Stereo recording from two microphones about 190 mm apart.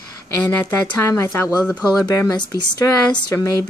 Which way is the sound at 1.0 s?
15° left (ahead or behind).